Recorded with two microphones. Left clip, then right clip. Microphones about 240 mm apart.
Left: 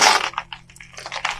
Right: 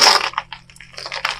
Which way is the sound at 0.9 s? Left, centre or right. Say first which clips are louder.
Right 2 dB; right.